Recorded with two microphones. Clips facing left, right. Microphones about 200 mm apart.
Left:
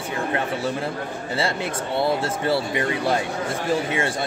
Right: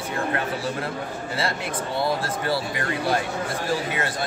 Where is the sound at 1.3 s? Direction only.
25° left (ahead or behind).